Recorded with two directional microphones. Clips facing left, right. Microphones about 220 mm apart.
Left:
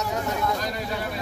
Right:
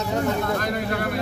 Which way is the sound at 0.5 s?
60° right (ahead or behind).